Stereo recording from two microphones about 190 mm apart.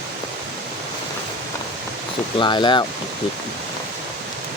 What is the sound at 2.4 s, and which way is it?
Speech, 25° left (ahead or behind).